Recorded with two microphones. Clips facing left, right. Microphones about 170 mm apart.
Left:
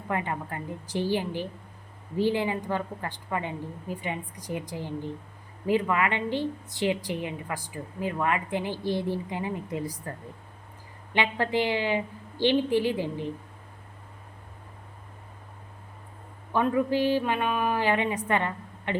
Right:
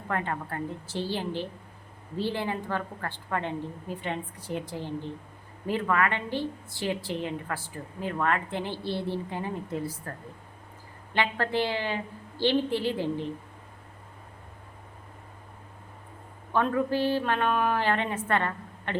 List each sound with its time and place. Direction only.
0.1 s a woman's voice: 15° left (ahead or behind)
11.1 s a woman's voice: 15° left (ahead or behind)
16.5 s a woman's voice: 15° left (ahead or behind)